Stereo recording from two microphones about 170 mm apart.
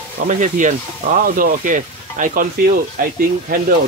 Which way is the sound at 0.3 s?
45° right (ahead or behind).